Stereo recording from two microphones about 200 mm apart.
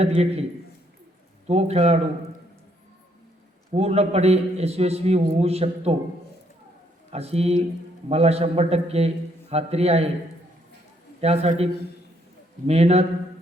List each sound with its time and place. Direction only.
0.0 s a man's voice: 30° right (ahead or behind)
1.5 s a man's voice: 30° right (ahead or behind)
3.7 s a man's voice: 30° right (ahead or behind)
7.1 s a man's voice: 30° right (ahead or behind)
11.2 s a man's voice: 30° right (ahead or behind)